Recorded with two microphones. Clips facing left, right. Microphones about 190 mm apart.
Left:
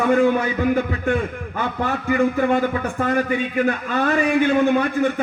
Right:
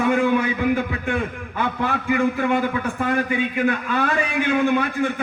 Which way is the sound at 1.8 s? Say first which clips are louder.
Left 2 dB; 40° left (ahead or behind).